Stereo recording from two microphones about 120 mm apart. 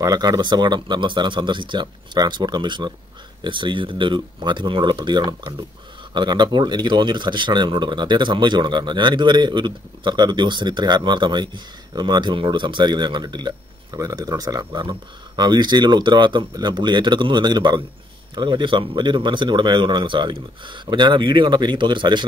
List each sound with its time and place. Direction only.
0.0 s a man's voice: 30° right (ahead or behind)